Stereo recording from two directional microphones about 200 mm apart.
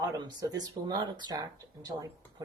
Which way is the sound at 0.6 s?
20° right (ahead or behind).